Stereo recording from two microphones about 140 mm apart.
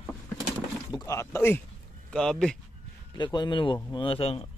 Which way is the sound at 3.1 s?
30° left (ahead or behind).